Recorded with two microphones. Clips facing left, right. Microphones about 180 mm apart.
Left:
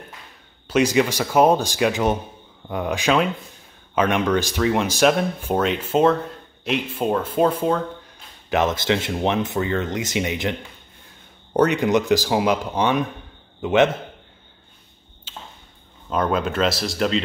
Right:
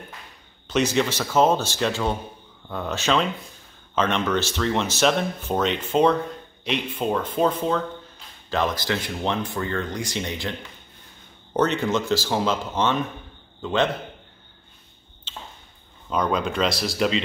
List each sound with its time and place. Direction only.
0.7 s speech: 10° left (ahead or behind)
8.5 s speech: 20° left (ahead or behind)
11.5 s a man's voice: 10° left (ahead or behind)
15.3 s a sound: 10° left (ahead or behind)
16.1 s speech: 5° left (ahead or behind)